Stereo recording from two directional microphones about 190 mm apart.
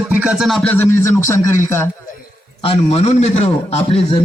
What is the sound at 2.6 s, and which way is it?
A man's voice, 30° left (ahead or behind).